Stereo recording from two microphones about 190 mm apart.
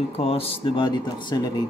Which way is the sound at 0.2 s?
30° left (ahead or behind).